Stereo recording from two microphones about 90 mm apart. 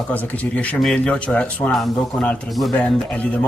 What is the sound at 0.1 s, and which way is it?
Speech, 15° left (ahead or behind).